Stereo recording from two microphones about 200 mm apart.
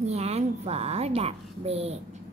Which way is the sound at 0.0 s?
30° right (ahead or behind).